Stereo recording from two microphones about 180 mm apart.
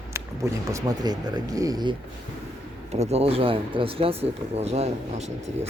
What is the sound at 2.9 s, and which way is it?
Speech, 35° right (ahead or behind).